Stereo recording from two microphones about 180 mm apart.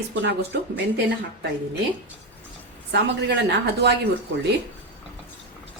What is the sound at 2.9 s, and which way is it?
Speech, 70° right (ahead or behind).